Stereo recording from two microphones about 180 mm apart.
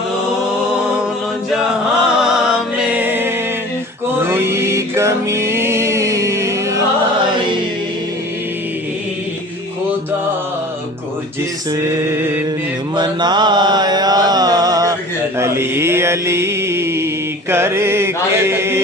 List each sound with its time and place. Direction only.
2.0 s music: 5° right (ahead or behind)
4.2 s mantra: 15° right (ahead or behind)
13.0 s mantra: 25° right (ahead or behind)